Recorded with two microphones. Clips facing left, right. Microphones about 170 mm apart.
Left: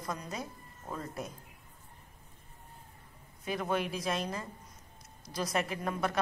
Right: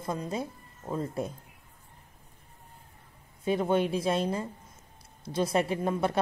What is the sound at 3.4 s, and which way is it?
Speech, 25° right (ahead or behind).